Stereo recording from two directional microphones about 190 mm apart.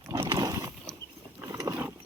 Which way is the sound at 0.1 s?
20° right (ahead or behind).